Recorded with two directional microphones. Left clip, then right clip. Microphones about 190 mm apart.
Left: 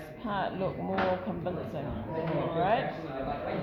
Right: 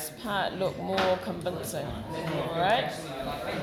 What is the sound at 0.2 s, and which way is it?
Speech, 30° right (ahead or behind).